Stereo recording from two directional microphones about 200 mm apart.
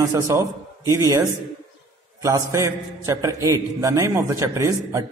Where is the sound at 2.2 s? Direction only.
15° right (ahead or behind).